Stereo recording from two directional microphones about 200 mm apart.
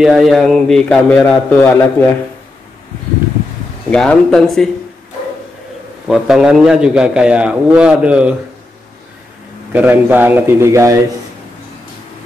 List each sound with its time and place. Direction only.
0.0 s a man's voice: centre (ahead or behind)
3.9 s a man's voice: 5° left (ahead or behind)
6.0 s a man's voice: 5° right (ahead or behind)
9.7 s a man's voice: 10° right (ahead or behind)